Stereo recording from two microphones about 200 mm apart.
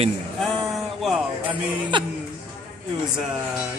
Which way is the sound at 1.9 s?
25° right (ahead or behind).